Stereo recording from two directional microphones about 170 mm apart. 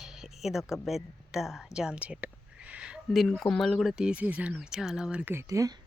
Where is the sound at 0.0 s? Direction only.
5° right (ahead or behind); by 5.8 s 20° right (ahead or behind).